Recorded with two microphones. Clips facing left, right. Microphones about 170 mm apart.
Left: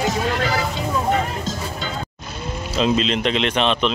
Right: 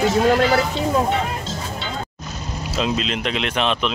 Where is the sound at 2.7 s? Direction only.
5° right (ahead or behind).